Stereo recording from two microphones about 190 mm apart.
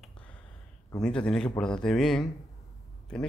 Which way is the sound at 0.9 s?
5° left (ahead or behind).